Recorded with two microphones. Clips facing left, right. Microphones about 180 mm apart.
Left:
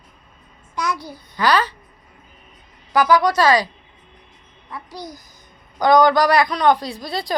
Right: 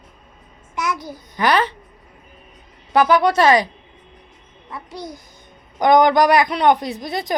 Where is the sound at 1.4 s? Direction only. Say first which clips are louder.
Right 1 dB; 25° right (ahead or behind).